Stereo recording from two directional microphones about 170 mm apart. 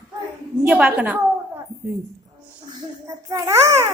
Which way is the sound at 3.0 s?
15° right (ahead or behind).